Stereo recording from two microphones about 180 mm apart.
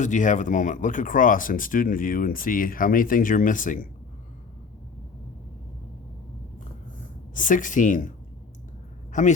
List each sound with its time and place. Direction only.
0.0 s speech: 45° left (ahead or behind)
7.3 s speech: 45° left (ahead or behind)
9.1 s speech: 45° left (ahead or behind)